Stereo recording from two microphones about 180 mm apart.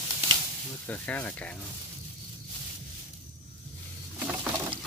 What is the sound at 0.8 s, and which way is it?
Speech, 10° left (ahead or behind).